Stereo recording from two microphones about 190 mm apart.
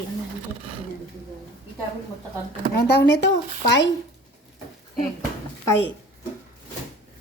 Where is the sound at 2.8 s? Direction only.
60° left (ahead or behind).